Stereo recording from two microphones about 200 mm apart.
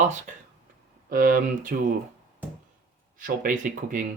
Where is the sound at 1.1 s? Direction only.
45° right (ahead or behind).